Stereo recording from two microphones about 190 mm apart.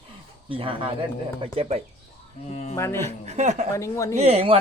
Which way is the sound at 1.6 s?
35° right (ahead or behind).